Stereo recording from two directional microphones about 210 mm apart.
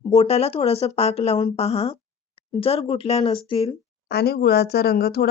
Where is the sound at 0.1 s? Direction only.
30° left (ahead or behind).